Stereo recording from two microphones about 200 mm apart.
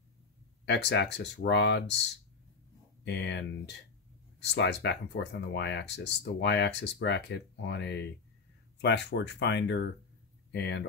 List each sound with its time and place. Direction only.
0.7 s speech: 60° left (ahead or behind)
3.1 s speech: 60° left (ahead or behind)